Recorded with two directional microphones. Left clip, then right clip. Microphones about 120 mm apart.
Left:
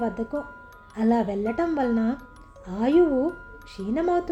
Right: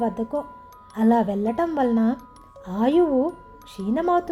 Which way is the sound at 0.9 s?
45° right (ahead or behind).